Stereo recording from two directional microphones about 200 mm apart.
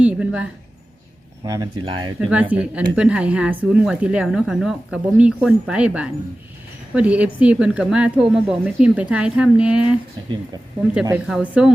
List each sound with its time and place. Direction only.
0.0 s a sound: 5° right (ahead or behind)
1.8 s speech: 25° right (ahead or behind)
2.1 s speech: 5° right (ahead or behind)
11.3 s speech: 5° right (ahead or behind)